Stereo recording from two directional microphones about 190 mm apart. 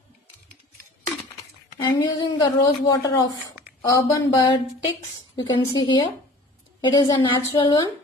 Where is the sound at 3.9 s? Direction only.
15° left (ahead or behind).